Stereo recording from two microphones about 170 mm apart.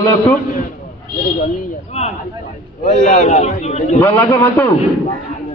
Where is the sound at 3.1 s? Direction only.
45° left (ahead or behind).